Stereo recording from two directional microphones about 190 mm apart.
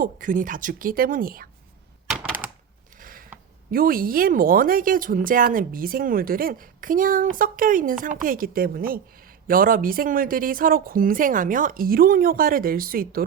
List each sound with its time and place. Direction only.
0.0 s speech: 45° right (ahead or behind)
3.0 s a sound: 45° right (ahead or behind)
3.7 s speech: 50° right (ahead or behind)